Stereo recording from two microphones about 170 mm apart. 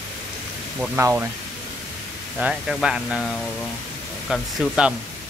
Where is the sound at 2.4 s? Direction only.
5° right (ahead or behind).